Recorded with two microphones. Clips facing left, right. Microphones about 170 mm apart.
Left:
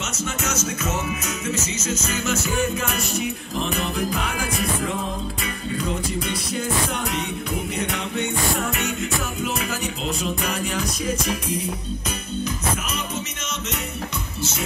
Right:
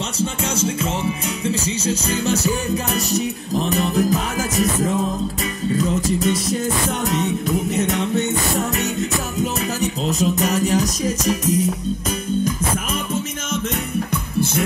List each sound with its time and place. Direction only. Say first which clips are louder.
0.2 s music: right 6 dB; 30° right (ahead or behind)
6.0 s music: right 8 dB; 40° right (ahead or behind)
14.1 s music: right 8 dB; 55° right (ahead or behind)